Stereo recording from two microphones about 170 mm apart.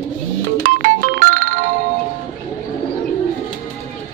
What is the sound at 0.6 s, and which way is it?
Music, 50° right (ahead or behind).